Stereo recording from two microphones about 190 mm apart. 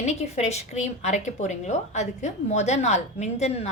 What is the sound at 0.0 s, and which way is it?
A woman's voice, 35° left (ahead or behind).